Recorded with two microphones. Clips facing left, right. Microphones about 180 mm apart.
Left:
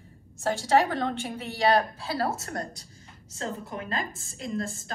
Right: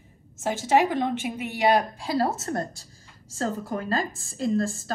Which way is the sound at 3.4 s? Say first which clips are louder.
Right 6 dB; 35° right (ahead or behind).